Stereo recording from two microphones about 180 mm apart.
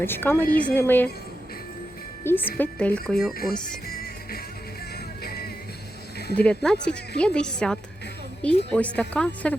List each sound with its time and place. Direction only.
0.0 s a woman's voice: 10° left (ahead or behind)
0.4 s speech: 50° left (ahead or behind)
0.7 s a woman's voice: 10° left (ahead or behind)
2.2 s a woman's voice: 10° left (ahead or behind)
3.8 s music: 55° left (ahead or behind)
6.3 s a woman's voice: 5° left (ahead or behind)